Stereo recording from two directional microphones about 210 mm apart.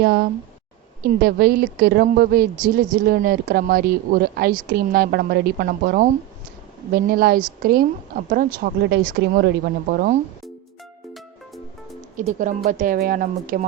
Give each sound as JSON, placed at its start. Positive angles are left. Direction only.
{"t": 0.0, "sound": "speech", "side_deg": -50}
{"t": 12.1, "sound": "speech", "side_deg": -35}